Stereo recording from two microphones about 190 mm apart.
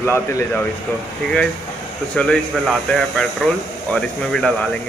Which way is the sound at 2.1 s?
5° left (ahead or behind).